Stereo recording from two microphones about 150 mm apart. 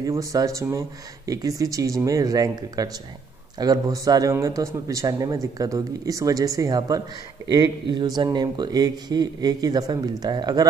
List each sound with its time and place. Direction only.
0.0 s a man's voice: 20° right (ahead or behind)